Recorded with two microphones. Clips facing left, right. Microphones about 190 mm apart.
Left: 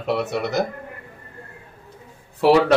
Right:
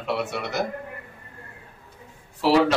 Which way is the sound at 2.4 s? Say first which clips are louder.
Left 5 dB; 60° left (ahead or behind).